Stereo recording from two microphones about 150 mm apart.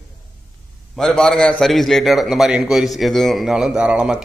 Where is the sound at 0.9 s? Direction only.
5° left (ahead or behind).